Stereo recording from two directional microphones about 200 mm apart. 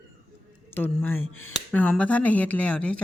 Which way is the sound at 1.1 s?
90° left.